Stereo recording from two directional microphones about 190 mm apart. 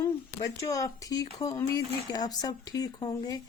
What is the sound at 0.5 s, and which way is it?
Speech, 15° left (ahead or behind).